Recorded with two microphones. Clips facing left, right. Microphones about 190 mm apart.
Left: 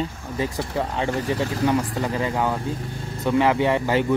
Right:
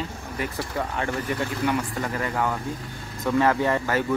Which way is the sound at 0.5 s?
20° left (ahead or behind).